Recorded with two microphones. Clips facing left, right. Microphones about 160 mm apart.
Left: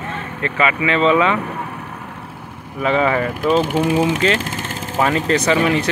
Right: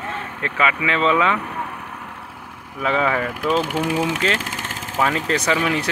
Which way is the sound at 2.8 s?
Centre (ahead or behind).